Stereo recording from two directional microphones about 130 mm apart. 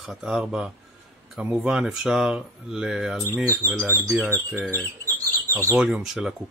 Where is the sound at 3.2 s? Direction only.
20° right (ahead or behind).